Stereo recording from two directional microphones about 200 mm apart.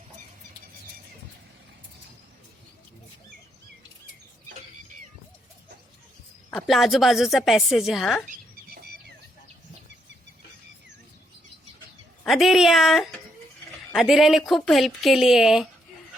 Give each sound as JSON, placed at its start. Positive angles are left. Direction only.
{"t": 6.5, "sound": "a woman's voice", "side_deg": 0}
{"t": 8.3, "sound": "a sound", "side_deg": -50}
{"t": 12.2, "sound": "a woman's voice", "side_deg": 0}